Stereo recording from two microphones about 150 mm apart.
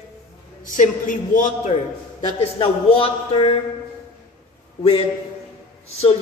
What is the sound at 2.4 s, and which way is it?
Speech, 40° left (ahead or behind).